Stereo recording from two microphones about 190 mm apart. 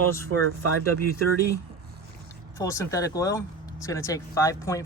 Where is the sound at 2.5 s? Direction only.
15° left (ahead or behind).